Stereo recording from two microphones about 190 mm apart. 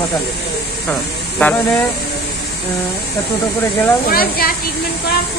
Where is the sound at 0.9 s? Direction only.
10° left (ahead or behind).